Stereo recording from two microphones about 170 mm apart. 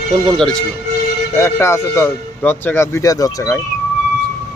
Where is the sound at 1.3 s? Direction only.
15° left (ahead or behind).